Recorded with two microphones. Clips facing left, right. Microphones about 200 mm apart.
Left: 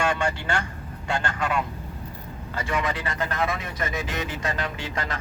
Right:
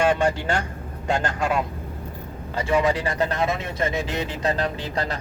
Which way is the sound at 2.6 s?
30° right (ahead or behind).